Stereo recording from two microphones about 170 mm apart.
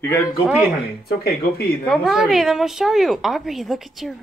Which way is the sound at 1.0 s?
65° left (ahead or behind).